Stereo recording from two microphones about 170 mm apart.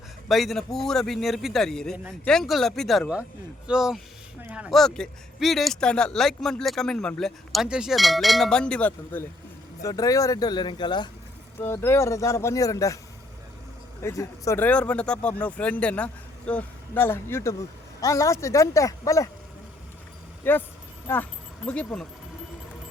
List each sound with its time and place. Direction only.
0.3 s speech: centre (ahead or behind)
9.8 s speech: 20° left (ahead or behind)
11.6 s speech: 15° left (ahead or behind)
14.0 s speech: 15° left (ahead or behind)
20.4 s speech: 10° left (ahead or behind)
21.7 s speech: 5° left (ahead or behind)